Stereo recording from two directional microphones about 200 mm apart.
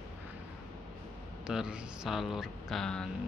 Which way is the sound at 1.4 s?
5° right (ahead or behind).